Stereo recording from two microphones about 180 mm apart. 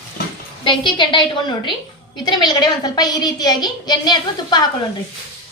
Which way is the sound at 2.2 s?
25° left (ahead or behind).